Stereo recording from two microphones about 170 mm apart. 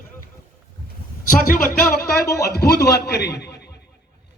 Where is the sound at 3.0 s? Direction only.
75° left (ahead or behind).